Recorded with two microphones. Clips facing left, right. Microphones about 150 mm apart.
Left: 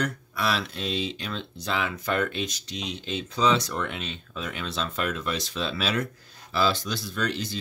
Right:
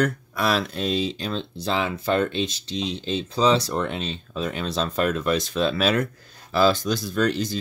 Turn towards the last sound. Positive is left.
turn(degrees=-45)  # may be behind; listen again after turning